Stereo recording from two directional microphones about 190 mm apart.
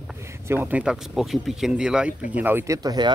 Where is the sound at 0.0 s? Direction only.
10° right (ahead or behind).